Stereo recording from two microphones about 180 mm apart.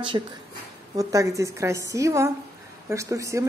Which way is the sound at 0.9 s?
15° right (ahead or behind).